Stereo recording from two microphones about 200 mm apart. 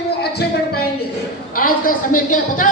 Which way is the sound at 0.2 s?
50° left (ahead or behind).